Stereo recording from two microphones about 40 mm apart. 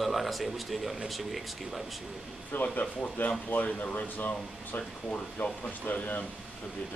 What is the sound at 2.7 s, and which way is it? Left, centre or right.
Speech, left.